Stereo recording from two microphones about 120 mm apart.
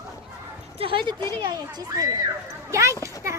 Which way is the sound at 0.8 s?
50° right (ahead or behind).